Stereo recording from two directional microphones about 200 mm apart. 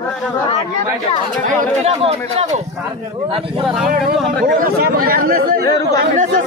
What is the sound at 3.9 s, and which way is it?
Speech, 45° right (ahead or behind).